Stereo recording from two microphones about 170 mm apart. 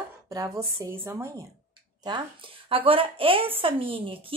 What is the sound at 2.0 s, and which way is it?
A woman's voice, 25° right (ahead or behind).